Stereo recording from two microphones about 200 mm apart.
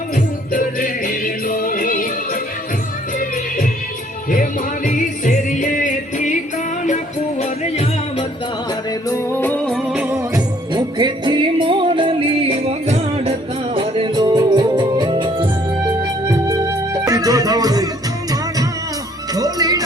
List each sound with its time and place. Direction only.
0.5 s music: 45° left (ahead or behind)
4.9 s music: 40° left (ahead or behind)
9.0 s music: 10° left (ahead or behind); by 19.8 s 20° right (ahead or behind)